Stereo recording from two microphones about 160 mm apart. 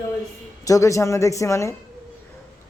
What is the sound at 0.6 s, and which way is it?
A man's voice, 20° left (ahead or behind).